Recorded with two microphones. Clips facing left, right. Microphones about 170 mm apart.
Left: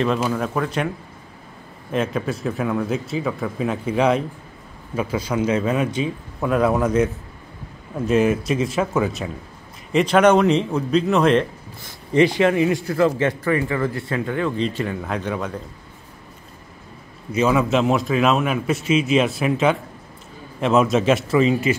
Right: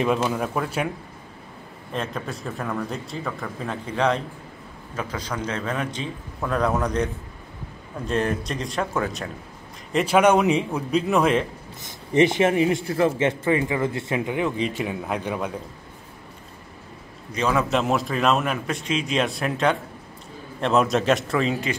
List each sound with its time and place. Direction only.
0.3 s a man's voice: 5° right (ahead or behind)
1.9 s a man's voice: 5° left (ahead or behind)
8.1 s a man's voice: 5° left (ahead or behind)
9.9 s a man's voice: 10° right (ahead or behind)
11.8 s a man's voice: 20° right (ahead or behind)
17.3 s a man's voice: 5° left (ahead or behind)